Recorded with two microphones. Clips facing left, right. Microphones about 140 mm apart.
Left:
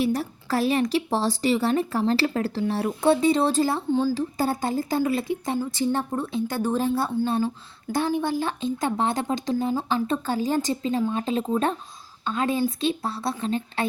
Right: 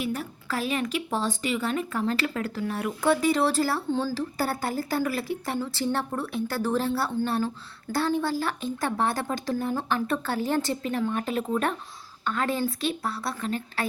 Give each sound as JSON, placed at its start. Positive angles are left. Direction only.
{"t": 0.0, "sound": "speech", "side_deg": 35}